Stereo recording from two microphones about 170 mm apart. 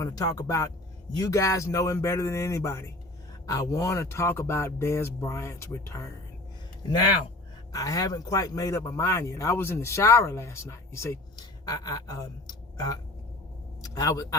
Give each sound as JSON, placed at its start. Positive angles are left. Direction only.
{"t": 0.0, "sound": "speech", "side_deg": 20}
{"t": 7.7, "sound": "speech", "side_deg": 20}